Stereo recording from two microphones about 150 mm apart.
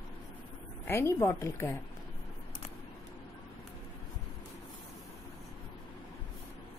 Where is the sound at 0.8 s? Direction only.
15° left (ahead or behind).